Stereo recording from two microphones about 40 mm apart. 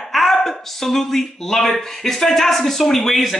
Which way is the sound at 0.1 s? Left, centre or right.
Centre.